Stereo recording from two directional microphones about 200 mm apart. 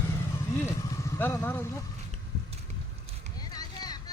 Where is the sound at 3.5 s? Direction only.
20° left (ahead or behind).